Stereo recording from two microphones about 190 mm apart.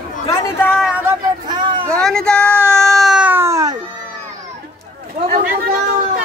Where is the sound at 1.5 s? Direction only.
25° right (ahead or behind).